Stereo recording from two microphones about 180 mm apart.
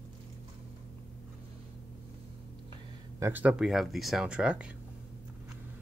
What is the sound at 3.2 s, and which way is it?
Speech, 10° right (ahead or behind).